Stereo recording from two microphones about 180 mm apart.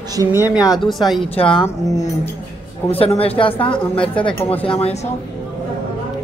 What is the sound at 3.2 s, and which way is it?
Speech, 30° left (ahead or behind).